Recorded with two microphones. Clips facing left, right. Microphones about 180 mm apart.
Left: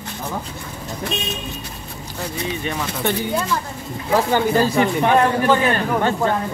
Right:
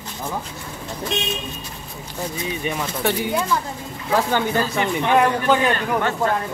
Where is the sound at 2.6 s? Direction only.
10° right (ahead or behind).